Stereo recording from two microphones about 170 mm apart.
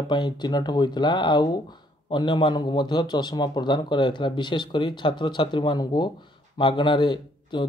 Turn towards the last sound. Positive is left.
turn(degrees=25)  # may be behind; listen again after turning